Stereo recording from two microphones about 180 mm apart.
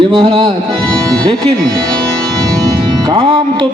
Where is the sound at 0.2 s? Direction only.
25° right (ahead or behind).